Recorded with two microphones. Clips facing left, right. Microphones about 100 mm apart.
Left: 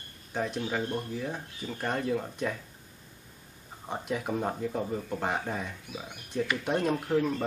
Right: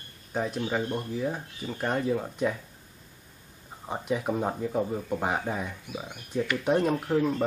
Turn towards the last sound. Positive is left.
turn(degrees=-10)  # may be behind; listen again after turning